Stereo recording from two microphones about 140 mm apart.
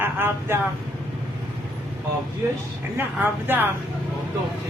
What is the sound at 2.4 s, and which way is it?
Speech, 20° right (ahead or behind).